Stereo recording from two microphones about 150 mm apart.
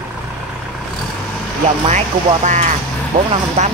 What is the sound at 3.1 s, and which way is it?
Speech, 40° right (ahead or behind).